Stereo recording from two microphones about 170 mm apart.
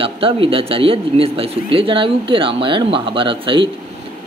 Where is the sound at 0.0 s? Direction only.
35° right (ahead or behind).